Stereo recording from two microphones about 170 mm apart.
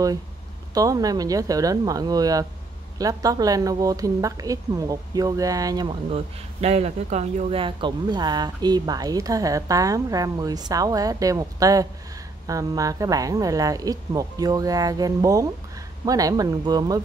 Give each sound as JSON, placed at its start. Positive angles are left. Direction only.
{"t": 0.7, "sound": "speech", "side_deg": -20}
{"t": 6.0, "sound": "speech", "side_deg": -35}